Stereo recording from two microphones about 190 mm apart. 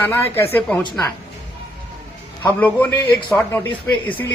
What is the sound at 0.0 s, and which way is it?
Speech, 10° left (ahead or behind).